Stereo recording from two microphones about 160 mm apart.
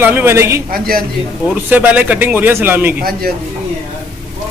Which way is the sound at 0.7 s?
65° right (ahead or behind).